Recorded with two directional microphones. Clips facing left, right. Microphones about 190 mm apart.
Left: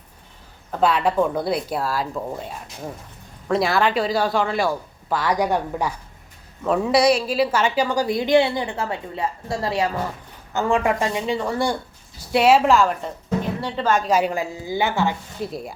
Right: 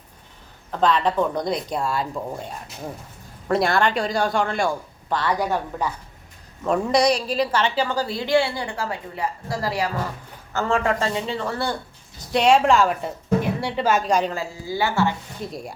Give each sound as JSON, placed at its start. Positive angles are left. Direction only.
{"t": 0.7, "sound": "a man's voice", "side_deg": 10}
{"t": 3.5, "sound": "a man's voice", "side_deg": 0}
{"t": 14.1, "sound": "a woman's voice", "side_deg": 10}
{"t": 15.4, "sound": "a man's voice", "side_deg": 5}